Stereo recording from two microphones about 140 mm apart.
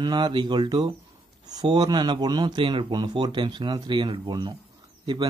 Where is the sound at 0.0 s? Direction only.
30° right (ahead or behind).